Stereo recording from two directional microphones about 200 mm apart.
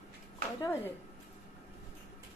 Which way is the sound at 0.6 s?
10° left (ahead or behind).